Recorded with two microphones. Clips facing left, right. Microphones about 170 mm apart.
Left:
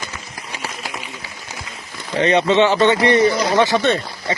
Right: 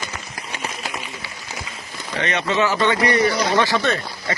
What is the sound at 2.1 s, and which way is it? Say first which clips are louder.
Speech: left 7 dB; 30° left (ahead or behind).